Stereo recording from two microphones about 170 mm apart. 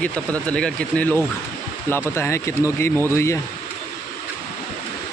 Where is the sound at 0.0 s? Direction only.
5° left (ahead or behind).